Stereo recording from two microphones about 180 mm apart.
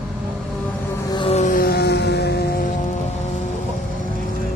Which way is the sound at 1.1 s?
35° left (ahead or behind).